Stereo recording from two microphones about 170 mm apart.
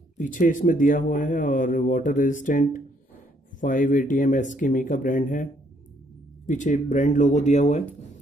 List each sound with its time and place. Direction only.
0.2 s a man's voice: 50° left (ahead or behind)